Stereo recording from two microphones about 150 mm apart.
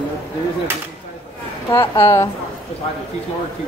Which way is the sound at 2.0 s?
20° left (ahead or behind).